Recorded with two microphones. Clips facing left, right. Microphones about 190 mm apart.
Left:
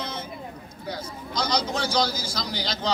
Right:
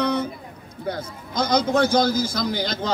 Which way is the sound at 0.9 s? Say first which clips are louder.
Right 4 dB; 50° right (ahead or behind).